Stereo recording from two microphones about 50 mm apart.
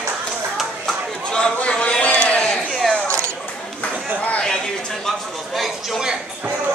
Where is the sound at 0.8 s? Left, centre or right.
Centre.